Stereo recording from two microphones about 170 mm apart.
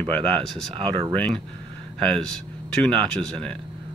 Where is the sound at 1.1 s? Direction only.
5° left (ahead or behind).